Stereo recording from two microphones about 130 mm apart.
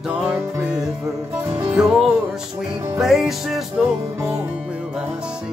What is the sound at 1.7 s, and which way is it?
Music, 5° right (ahead or behind).